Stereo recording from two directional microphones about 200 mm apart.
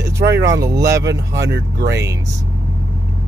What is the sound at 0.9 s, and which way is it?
Speech, 55° right (ahead or behind).